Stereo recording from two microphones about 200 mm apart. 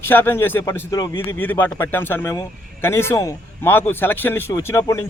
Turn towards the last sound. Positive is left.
turn(degrees=15)  # may be behind; listen again after turning